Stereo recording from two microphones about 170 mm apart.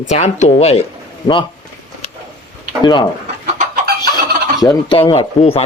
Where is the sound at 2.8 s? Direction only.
25° left (ahead or behind).